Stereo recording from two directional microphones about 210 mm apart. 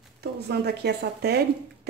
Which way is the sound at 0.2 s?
50° right (ahead or behind).